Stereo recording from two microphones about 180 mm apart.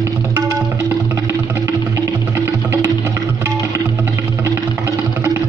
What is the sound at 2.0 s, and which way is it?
Music, 15° right (ahead or behind).